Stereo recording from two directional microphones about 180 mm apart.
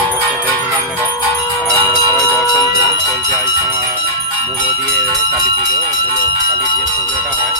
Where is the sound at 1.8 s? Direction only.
15° left (ahead or behind).